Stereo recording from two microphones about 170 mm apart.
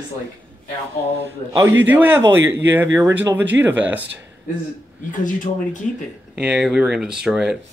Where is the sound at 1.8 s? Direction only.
10° right (ahead or behind).